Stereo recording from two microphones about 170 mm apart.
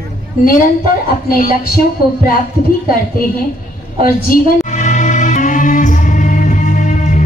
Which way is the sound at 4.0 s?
50° left (ahead or behind).